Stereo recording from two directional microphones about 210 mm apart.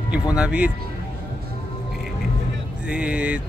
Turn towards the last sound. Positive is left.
turn(degrees=-5)  # may be behind; listen again after turning